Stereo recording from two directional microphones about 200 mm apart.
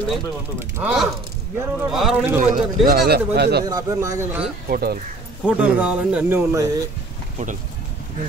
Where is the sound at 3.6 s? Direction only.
15° right (ahead or behind).